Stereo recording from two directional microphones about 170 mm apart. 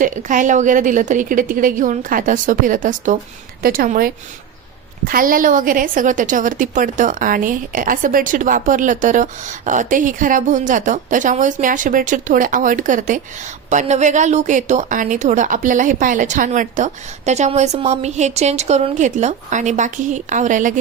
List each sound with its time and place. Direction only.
0.0 s a woman's voice: 50° right (ahead or behind)